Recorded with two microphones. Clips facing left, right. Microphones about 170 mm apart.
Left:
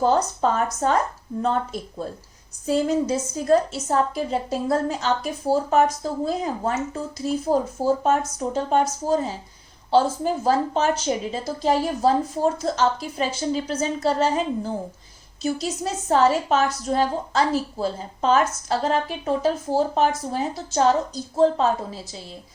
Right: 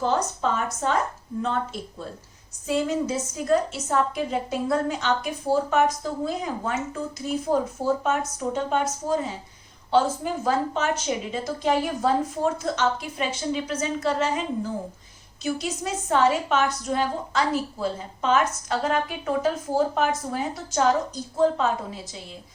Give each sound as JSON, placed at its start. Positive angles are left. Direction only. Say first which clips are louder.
{"t": 0.0, "sound": "a woman's voice", "louder": "left 4 dB", "side_deg": 40}